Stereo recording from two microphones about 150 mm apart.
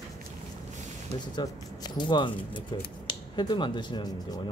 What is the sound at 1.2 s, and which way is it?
Speech, 30° left (ahead or behind).